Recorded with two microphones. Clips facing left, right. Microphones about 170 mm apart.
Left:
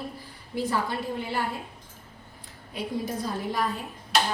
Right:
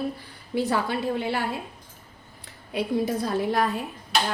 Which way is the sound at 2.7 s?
70° right (ahead or behind).